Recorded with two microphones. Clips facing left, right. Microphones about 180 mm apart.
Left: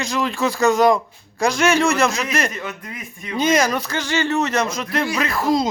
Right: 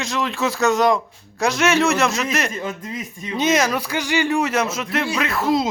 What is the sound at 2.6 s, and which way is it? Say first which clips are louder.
Speech: right 3 dB; 25° right (ahead or behind).